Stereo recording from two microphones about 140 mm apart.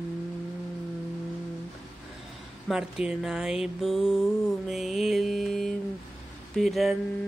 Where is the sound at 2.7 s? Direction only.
5° right (ahead or behind).